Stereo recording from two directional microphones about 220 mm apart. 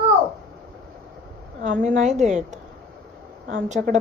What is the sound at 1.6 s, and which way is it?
Speech, 35° right (ahead or behind).